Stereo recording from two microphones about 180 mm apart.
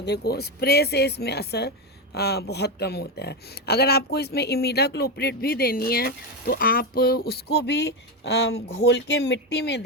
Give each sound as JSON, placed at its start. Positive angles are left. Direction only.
{"t": 0.0, "sound": "speech", "side_deg": 65}